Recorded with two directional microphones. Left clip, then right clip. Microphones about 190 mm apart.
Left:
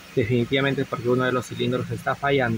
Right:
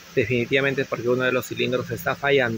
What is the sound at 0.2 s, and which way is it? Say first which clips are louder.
Speech: right 1 dB; centre (ahead or behind).